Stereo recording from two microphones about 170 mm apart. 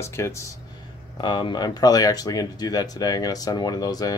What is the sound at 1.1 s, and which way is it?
Speech, 25° left (ahead or behind).